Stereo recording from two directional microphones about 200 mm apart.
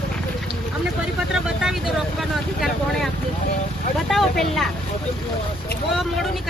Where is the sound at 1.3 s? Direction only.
5° right (ahead or behind).